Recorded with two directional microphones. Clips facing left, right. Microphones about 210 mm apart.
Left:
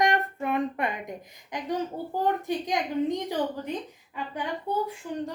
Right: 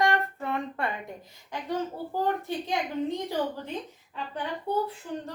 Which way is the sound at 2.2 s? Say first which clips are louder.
Left 3 dB; 15° left (ahead or behind).